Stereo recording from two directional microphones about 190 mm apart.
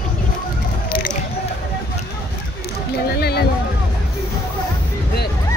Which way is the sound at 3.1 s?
55° left (ahead or behind).